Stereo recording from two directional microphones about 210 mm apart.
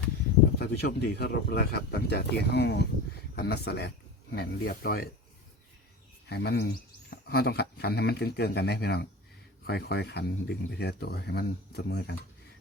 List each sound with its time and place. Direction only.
0.6 s speech: 50° left (ahead or behind)
6.2 s speech: 50° left (ahead or behind)